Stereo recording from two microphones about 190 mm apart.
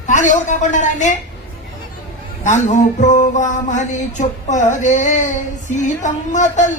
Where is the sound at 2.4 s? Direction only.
40° left (ahead or behind).